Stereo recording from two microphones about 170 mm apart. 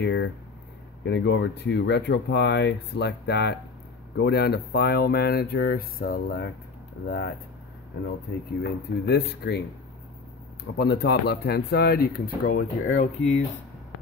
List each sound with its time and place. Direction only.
0.0 s speech: 90° left; by 7.3 s 65° left (ahead or behind)
8.6 s speech: 70° left (ahead or behind); by 13.4 s 45° left (ahead or behind)